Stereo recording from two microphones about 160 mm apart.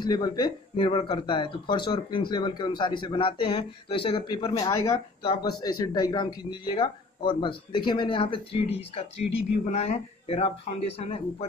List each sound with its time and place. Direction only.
0.0 s speech: 25° left (ahead or behind)